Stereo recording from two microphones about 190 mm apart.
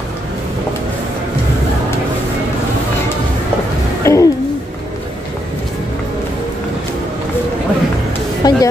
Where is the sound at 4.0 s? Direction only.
15° left (ahead or behind).